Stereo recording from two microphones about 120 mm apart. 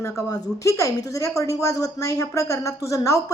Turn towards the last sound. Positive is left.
turn(degrees=25)  # may be behind; listen again after turning